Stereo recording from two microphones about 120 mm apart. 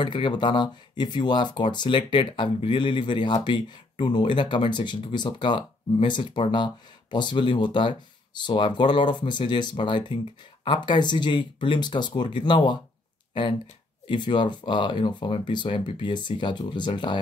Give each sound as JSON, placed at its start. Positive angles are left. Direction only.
{"t": 0.0, "sound": "speech", "side_deg": 40}